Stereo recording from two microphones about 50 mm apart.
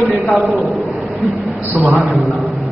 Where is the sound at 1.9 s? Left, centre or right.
Centre.